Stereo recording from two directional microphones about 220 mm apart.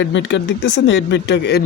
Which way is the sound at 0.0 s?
55° left (ahead or behind).